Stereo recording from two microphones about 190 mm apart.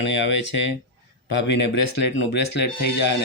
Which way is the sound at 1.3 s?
65° left (ahead or behind).